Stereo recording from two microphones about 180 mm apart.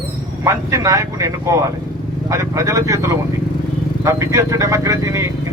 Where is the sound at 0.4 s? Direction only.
15° right (ahead or behind).